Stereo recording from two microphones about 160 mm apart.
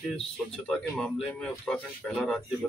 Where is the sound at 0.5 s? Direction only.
5° left (ahead or behind).